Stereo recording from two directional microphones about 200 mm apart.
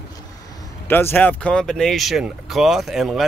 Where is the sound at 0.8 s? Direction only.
10° left (ahead or behind).